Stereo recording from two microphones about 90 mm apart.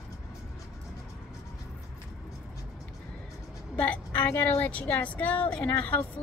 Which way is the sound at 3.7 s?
15° left (ahead or behind).